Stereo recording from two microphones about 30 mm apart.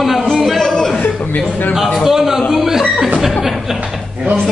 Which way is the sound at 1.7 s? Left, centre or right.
Centre.